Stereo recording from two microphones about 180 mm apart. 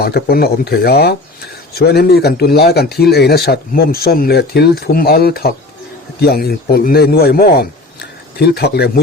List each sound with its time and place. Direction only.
0.0 s a man's voice: 60° left (ahead or behind)